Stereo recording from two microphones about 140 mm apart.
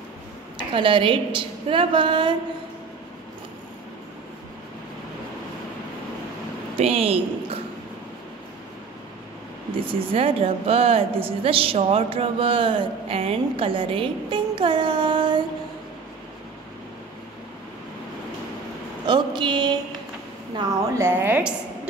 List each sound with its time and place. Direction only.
0.6 s a woman's voice: 40° right (ahead or behind)
6.8 s a woman's voice: 45° right (ahead or behind)
9.8 s a woman's voice: 40° right (ahead or behind)
19.0 s a sound: 35° right (ahead or behind)
21.0 s a woman's voice: 15° right (ahead or behind)